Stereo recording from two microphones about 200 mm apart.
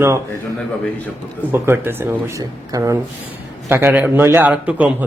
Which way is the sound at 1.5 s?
10° right (ahead or behind).